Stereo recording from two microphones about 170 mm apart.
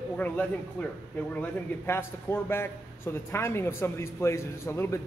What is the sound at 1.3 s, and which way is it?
A man's voice, 10° left (ahead or behind).